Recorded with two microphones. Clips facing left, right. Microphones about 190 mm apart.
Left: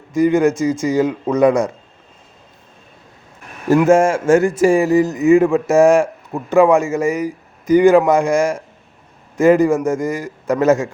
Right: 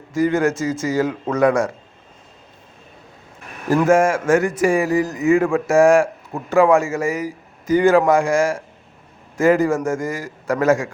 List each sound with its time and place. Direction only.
0.1 s a man's voice: 15° left (ahead or behind)
3.8 s a man's voice: 25° left (ahead or behind)